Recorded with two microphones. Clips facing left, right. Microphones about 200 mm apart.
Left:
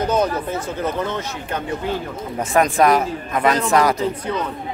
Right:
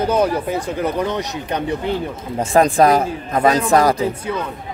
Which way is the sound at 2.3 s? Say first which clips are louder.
Right 3 dB; 30° right (ahead or behind).